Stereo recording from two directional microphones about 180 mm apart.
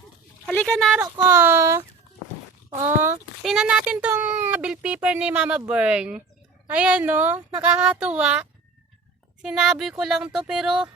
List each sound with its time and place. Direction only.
0.4 s speech: 5° left (ahead or behind)
1.0 s speech: 15° right (ahead or behind)
3.4 s speech: 5° right (ahead or behind)
9.4 s child singing: 5° right (ahead or behind)